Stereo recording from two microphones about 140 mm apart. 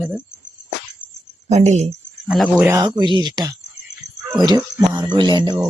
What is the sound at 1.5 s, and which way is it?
Speech, 50° right (ahead or behind).